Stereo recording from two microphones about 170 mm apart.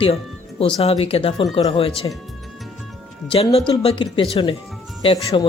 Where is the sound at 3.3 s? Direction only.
35° left (ahead or behind).